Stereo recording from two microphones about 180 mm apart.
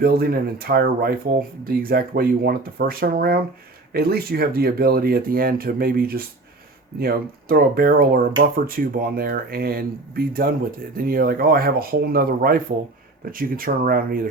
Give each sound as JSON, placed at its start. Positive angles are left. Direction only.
{"t": 0.0, "sound": "speech", "side_deg": -55}